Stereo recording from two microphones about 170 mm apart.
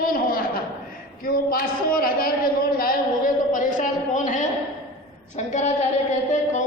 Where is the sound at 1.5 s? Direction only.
60° left (ahead or behind).